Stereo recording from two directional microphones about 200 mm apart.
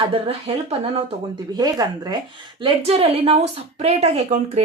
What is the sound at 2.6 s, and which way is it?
A woman's voice, 30° right (ahead or behind).